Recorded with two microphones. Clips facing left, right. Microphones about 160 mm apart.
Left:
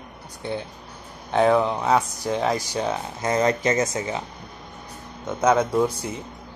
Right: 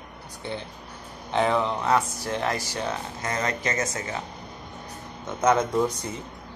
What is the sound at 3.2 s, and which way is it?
Speech, 25° left (ahead or behind).